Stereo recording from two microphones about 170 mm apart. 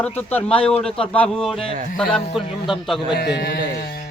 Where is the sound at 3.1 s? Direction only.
75° left (ahead or behind).